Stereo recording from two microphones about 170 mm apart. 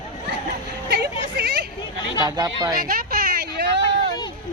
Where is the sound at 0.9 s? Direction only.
75° right (ahead or behind).